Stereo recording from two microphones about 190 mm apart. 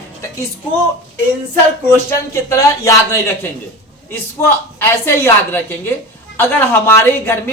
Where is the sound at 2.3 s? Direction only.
15° left (ahead or behind).